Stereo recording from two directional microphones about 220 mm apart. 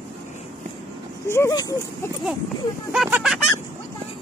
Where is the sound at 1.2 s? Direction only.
10° left (ahead or behind).